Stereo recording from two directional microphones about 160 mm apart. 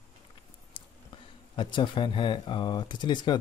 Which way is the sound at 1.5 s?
30° left (ahead or behind).